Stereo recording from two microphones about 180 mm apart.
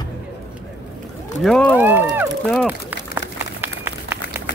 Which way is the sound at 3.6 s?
15° right (ahead or behind).